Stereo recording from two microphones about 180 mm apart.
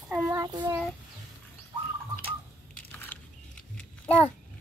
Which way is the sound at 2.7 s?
5° left (ahead or behind).